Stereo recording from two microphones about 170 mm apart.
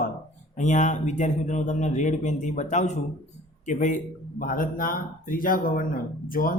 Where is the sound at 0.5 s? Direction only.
45° left (ahead or behind).